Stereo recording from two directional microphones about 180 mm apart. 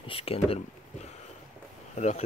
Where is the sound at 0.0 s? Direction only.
30° left (ahead or behind).